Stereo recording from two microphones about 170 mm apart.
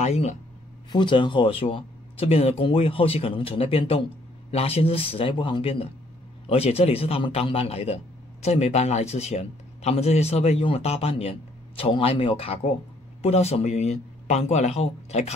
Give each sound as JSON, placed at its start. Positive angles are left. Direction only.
{"t": 0.0, "sound": "speech", "side_deg": 40}
{"t": 0.9, "sound": "speech", "side_deg": 30}